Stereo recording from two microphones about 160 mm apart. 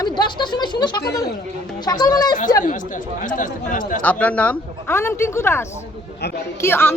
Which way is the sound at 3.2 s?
55° left (ahead or behind).